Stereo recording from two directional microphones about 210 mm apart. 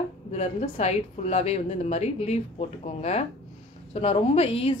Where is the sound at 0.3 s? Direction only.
30° left (ahead or behind).